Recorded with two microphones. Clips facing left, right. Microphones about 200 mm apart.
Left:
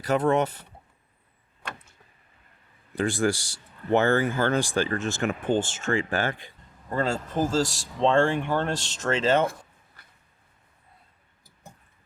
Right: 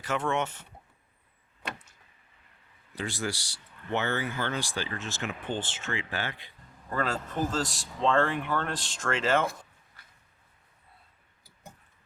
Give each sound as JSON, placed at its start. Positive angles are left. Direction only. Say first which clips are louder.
{"t": 0.0, "sound": "speech", "louder": "left 7 dB", "side_deg": 40}
{"t": 2.9, "sound": "speech", "louder": "left 9 dB", "side_deg": 50}
{"t": 6.9, "sound": "speech", "louder": "left 4 dB", "side_deg": 30}